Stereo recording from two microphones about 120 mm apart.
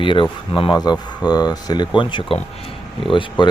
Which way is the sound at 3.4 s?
40° left (ahead or behind).